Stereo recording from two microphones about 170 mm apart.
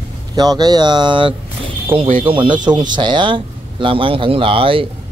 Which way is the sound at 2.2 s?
30° right (ahead or behind).